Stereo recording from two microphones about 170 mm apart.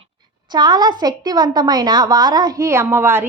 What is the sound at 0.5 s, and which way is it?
A woman's voice, 25° right (ahead or behind).